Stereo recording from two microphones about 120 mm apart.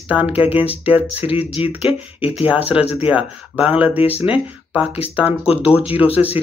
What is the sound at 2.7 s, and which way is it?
Speech, 55° left (ahead or behind).